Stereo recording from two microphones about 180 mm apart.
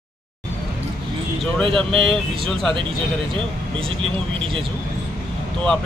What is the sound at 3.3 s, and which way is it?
Speech, 30° right (ahead or behind).